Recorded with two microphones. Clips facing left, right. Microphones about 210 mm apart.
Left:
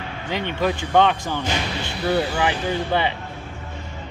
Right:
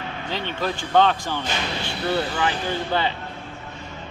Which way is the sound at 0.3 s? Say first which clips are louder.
Left 5 dB; 15° left (ahead or behind).